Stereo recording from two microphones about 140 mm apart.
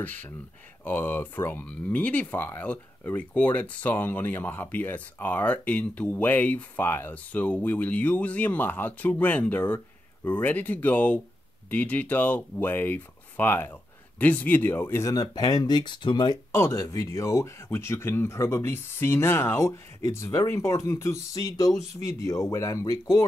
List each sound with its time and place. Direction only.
0.0 s speech: 10° left (ahead or behind); by 16.3 s 35° left (ahead or behind)
16.5 s speech: 20° left (ahead or behind)